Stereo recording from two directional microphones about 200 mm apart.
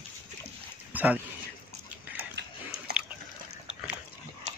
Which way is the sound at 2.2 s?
50° right (ahead or behind).